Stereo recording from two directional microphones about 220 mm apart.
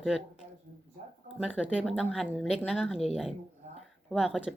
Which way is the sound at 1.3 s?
5° right (ahead or behind).